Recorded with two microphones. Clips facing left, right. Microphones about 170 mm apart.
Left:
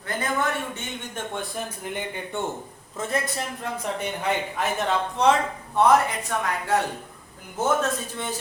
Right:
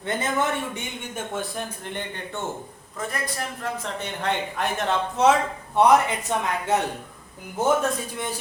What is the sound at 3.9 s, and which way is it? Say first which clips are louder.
Speech: left 1 dB; 10° left (ahead or behind).